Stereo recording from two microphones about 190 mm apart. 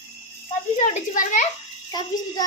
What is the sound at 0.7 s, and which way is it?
Speech, 40° left (ahead or behind).